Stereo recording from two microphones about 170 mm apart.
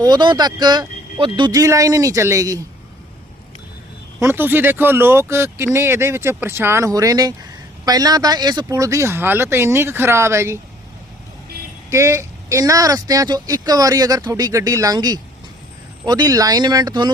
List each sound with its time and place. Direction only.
0.0 s speech: 25° right (ahead or behind)
4.2 s speech: 15° right (ahead or behind)
11.9 s speech: 15° right (ahead or behind)